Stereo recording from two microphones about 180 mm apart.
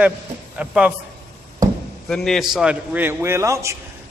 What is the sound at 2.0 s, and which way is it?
A man's voice, centre (ahead or behind).